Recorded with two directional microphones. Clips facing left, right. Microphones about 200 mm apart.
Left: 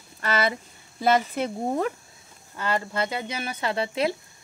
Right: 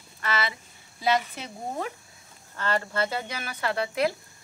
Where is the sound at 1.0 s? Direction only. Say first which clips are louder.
Left 4 dB; 50° left (ahead or behind).